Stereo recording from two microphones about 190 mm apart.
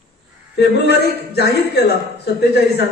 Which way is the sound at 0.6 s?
60° left (ahead or behind).